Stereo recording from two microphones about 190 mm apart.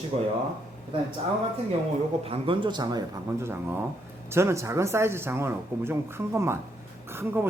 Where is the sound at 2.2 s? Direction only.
30° right (ahead or behind).